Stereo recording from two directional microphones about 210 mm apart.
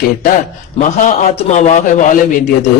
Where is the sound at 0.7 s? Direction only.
35° left (ahead or behind).